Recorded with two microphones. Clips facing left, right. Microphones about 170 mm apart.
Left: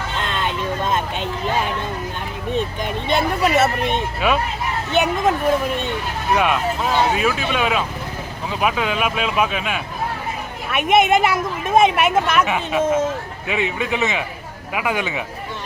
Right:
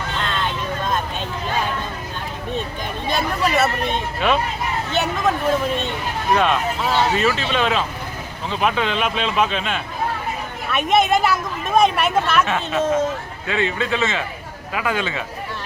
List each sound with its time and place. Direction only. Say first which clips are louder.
0.4 s vehicle: left 2 dB; 20° left (ahead or behind)
2.5 s speech: left 5 dB; 15° left (ahead or behind)
4.2 s speech: right 1 dB; 5° left (ahead or behind)
6.3 s speech: even; 10° left (ahead or behind)